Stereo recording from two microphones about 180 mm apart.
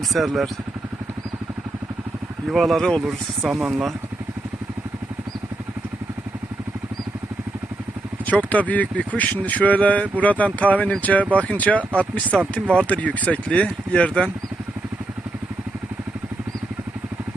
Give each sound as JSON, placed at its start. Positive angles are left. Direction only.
{"t": 0.1, "sound": "speech", "side_deg": 0}
{"t": 2.5, "sound": "speech", "side_deg": 0}
{"t": 8.3, "sound": "speech", "side_deg": 10}